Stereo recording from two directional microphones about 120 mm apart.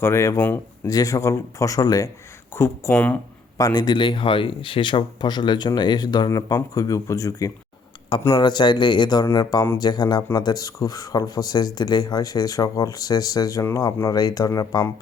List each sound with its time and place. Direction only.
0.0 s speech: 25° left (ahead or behind)
0.9 s speech: 30° left (ahead or behind); by 3.2 s 10° left (ahead or behind)
3.6 s speech: 35° left (ahead or behind)
8.4 s speech: 40° left (ahead or behind)